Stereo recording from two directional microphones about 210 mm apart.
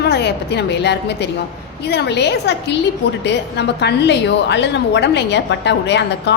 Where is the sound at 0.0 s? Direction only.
50° left (ahead or behind).